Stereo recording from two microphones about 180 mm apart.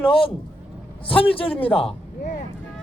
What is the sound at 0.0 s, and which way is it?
A man's voice, 30° left (ahead or behind).